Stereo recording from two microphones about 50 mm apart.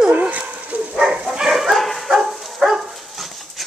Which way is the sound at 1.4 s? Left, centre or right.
Centre.